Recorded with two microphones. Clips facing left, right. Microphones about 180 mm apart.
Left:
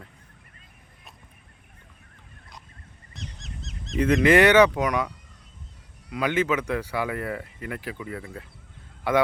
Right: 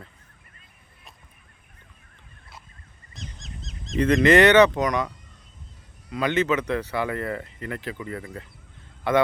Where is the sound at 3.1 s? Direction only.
65° left (ahead or behind).